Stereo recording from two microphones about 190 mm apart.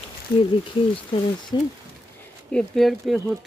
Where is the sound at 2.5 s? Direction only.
5° left (ahead or behind).